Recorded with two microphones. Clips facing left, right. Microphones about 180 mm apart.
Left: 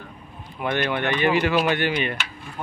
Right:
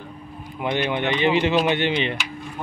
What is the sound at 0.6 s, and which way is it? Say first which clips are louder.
Speech: right 1 dB; 15° right (ahead or behind).